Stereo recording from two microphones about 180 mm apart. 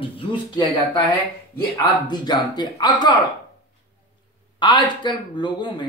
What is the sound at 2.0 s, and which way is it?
Speech, 25° left (ahead or behind).